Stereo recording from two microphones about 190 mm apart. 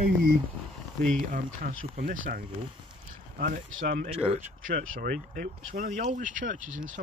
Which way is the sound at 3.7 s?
90° right.